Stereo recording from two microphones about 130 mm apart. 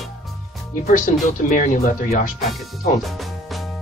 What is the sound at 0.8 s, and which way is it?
Speech, 90° left.